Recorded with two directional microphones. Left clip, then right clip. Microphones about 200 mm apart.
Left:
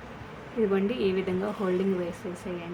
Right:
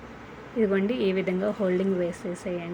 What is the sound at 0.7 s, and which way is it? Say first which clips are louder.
Speech: right 1 dB; 15° right (ahead or behind).